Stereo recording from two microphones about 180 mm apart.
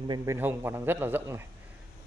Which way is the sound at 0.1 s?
15° right (ahead or behind).